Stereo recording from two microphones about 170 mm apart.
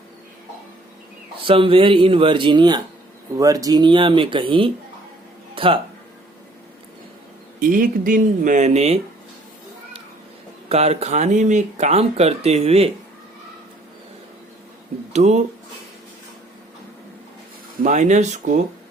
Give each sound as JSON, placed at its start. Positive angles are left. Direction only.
{"t": 1.5, "sound": "speech", "side_deg": -30}
{"t": 7.6, "sound": "speech", "side_deg": -50}
{"t": 10.7, "sound": "speech", "side_deg": -40}
{"t": 15.1, "sound": "speech", "side_deg": -40}
{"t": 17.8, "sound": "speech", "side_deg": -45}